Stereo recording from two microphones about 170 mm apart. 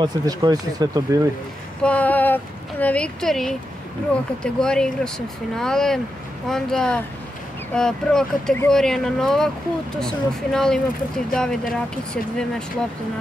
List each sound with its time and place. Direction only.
0.0 s speech: 25° right (ahead or behind)
1.8 s speech: 10° left (ahead or behind)